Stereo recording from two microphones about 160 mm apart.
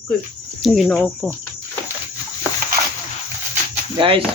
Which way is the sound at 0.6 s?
Centre (ahead or behind).